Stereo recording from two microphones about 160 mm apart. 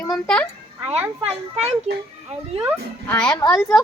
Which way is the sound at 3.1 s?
5° left (ahead or behind).